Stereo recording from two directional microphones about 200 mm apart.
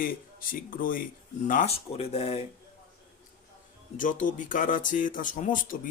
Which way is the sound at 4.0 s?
40° left (ahead or behind).